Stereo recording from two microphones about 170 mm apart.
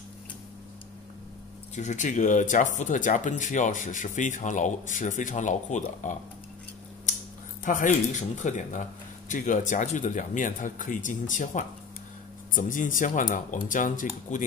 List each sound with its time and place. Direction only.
1.8 s speech: 45° left (ahead or behind)
7.6 s speech: 50° left (ahead or behind)